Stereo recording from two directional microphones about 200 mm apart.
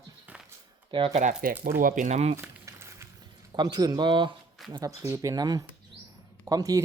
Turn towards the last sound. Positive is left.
turn(degrees=-15)  # may be behind; listen again after turning